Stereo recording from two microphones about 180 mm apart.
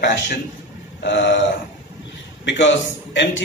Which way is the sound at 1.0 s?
85° left.